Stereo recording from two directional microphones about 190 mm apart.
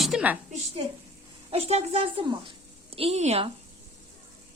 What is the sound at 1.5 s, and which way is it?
A woman's voice, 30° right (ahead or behind).